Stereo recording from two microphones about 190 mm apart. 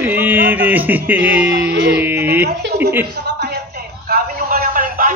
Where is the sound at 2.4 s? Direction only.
60° right (ahead or behind).